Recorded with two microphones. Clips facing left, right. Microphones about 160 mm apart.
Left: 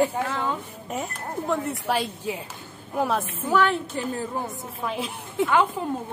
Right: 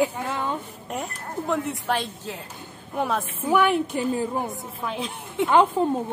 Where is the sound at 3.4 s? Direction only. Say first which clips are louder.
Right 2 dB; 15° right (ahead or behind).